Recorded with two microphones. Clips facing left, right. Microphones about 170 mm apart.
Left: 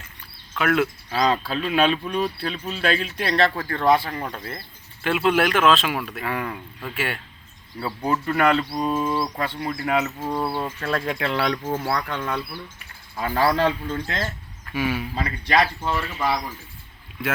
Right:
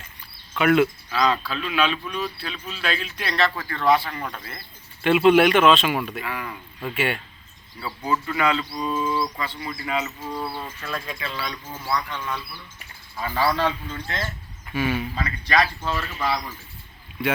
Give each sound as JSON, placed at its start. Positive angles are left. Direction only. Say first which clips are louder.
{"t": 0.5, "sound": "a man's voice", "louder": "right 3 dB", "side_deg": 0}
{"t": 1.1, "sound": "speech", "louder": "left 1 dB", "side_deg": 45}
{"t": 4.2, "sound": "speech", "louder": "left 3 dB", "side_deg": 30}
{"t": 5.0, "sound": "a man's voice", "louder": "right 5 dB", "side_deg": 0}
{"t": 6.2, "sound": "speech", "louder": "left 4 dB", "side_deg": 50}
{"t": 6.8, "sound": "a man's voice", "louder": "right 3 dB", "side_deg": 0}
{"t": 7.8, "sound": "speech", "louder": "left 2 dB", "side_deg": 55}
{"t": 14.7, "sound": "a man's voice", "louder": "even", "side_deg": 10}
{"t": 15.1, "sound": "speech", "louder": "left 1 dB", "side_deg": 30}